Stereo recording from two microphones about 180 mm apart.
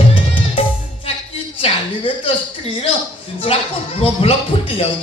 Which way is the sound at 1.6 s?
35° left (ahead or behind).